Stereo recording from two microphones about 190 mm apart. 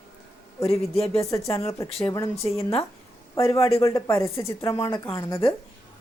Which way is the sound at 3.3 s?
15° left (ahead or behind).